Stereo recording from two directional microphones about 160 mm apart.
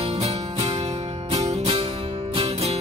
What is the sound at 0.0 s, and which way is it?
Music, 40° right (ahead or behind).